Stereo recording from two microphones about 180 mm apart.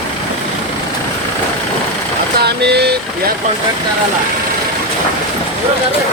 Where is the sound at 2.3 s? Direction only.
65° right (ahead or behind).